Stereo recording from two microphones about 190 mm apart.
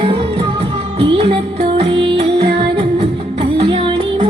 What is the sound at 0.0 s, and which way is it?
Music, 25° right (ahead or behind).